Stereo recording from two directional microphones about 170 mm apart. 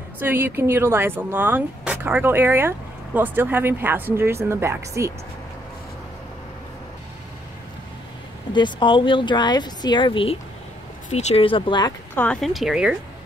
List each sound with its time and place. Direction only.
0.2 s speech: 10° right (ahead or behind)
8.5 s speech: 30° left (ahead or behind)
11.1 s speech: 40° left (ahead or behind)
12.2 s speech: 5° left (ahead or behind)